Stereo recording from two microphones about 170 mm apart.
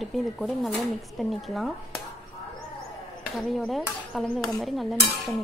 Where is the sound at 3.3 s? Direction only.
Centre (ahead or behind).